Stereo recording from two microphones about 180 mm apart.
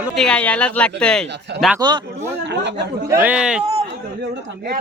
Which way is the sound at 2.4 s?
80° right.